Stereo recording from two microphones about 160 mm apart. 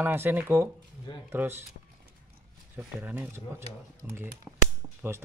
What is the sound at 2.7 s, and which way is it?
Speech, 10° right (ahead or behind).